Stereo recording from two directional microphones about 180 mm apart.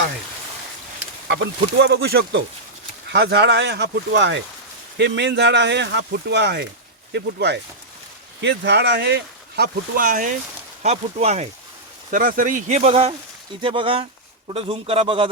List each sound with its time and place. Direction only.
1.3 s speech: 70° right (ahead or behind); by 10.3 s 50° right (ahead or behind)
10.8 s speech: 35° right (ahead or behind)
12.1 s speech: 50° right (ahead or behind); by 15.3 s 30° right (ahead or behind)